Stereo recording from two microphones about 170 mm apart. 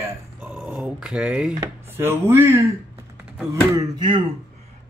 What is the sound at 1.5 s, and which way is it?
Speech, 15° right (ahead or behind).